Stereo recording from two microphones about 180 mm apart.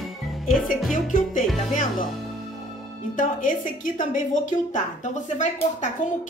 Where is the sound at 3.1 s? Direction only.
45° left (ahead or behind).